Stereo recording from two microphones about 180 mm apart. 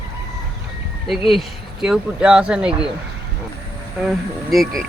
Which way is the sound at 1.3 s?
Centre (ahead or behind).